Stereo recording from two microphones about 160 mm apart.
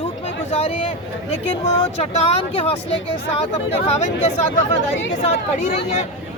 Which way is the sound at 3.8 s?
45° left (ahead or behind).